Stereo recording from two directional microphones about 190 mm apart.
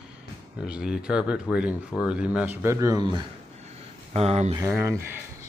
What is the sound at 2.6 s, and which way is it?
Speech, 15° right (ahead or behind).